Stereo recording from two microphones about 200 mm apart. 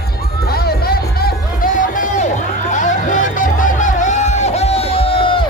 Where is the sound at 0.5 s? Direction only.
50° left (ahead or behind); by 5.4 s 25° left (ahead or behind).